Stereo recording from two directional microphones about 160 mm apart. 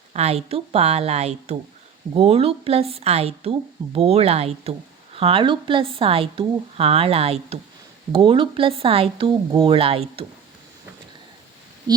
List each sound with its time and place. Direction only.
0.1 s a woman's voice: 40° right (ahead or behind)
11.9 s speech: 25° right (ahead or behind)